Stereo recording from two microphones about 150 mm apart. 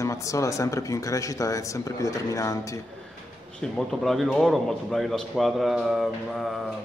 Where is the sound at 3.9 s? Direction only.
Centre (ahead or behind).